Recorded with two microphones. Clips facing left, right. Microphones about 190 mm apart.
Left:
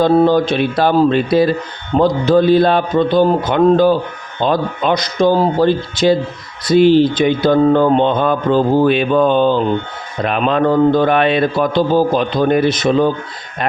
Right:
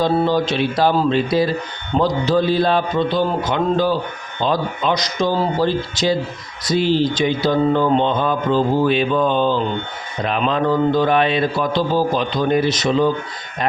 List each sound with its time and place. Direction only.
0.0 s a man's voice: 50° left (ahead or behind)